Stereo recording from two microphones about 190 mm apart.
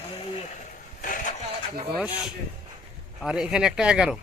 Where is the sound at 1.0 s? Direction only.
45° left (ahead or behind).